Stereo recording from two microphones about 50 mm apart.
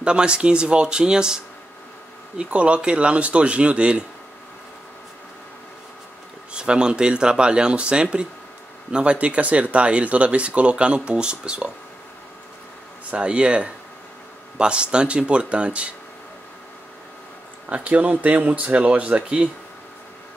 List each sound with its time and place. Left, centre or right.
0.0 s speech: centre
6.5 s speech: centre
13.1 s speech: right
17.6 s speech: right